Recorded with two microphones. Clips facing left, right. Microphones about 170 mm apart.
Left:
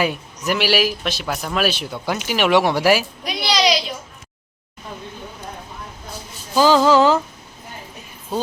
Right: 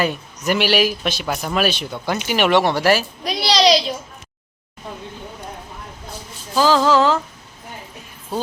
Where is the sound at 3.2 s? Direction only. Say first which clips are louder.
Right 3 dB; 35° right (ahead or behind).